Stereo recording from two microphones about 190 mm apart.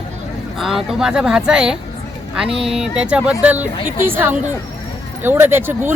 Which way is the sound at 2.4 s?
30° right (ahead or behind).